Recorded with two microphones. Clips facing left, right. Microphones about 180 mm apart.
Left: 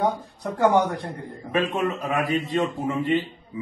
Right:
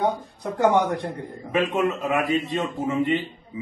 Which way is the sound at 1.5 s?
20° right (ahead or behind).